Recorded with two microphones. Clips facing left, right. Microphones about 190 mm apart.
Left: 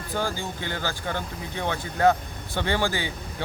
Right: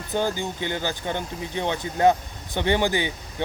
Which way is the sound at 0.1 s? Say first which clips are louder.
Right 4 dB; 20° right (ahead or behind).